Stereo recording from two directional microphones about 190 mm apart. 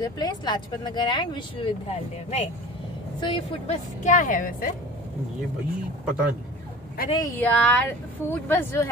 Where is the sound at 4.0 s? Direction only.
40° left (ahead or behind).